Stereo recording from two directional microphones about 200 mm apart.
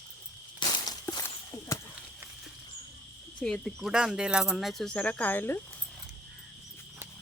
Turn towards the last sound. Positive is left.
turn(degrees=10)  # may be behind; listen again after turning